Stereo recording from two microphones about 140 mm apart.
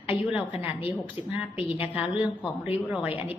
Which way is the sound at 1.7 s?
10° right (ahead or behind).